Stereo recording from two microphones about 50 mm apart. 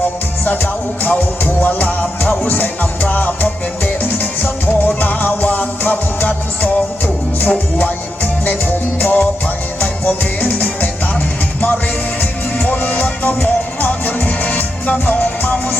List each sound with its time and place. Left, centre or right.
0.4 s music: left
4.9 s music: left
9.0 s music: left
12.2 s music: left